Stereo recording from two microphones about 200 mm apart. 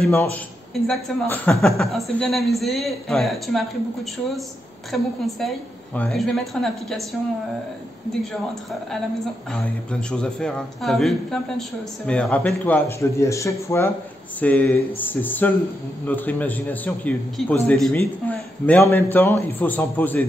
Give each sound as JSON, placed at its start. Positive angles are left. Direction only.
{"t": 0.1, "sound": "a man's voice", "side_deg": 10}
{"t": 8.1, "sound": "a man's voice", "side_deg": 0}
{"t": 9.5, "sound": "a man's voice", "side_deg": 5}